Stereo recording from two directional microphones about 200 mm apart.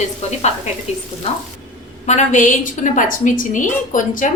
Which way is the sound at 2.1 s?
40° left (ahead or behind).